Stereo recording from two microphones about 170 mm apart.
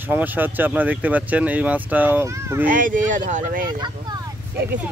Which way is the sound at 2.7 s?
50° right (ahead or behind).